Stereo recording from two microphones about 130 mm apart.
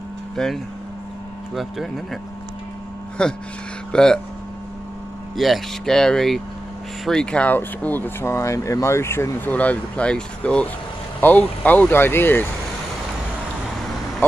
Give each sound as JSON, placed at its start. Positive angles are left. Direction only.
{"t": 0.4, "sound": "speech", "side_deg": 5}
{"t": 3.2, "sound": "speech", "side_deg": 5}
{"t": 5.3, "sound": "speech", "side_deg": 0}